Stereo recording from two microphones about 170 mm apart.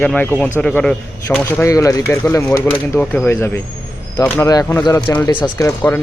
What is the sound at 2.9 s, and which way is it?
Speech, 5° left (ahead or behind).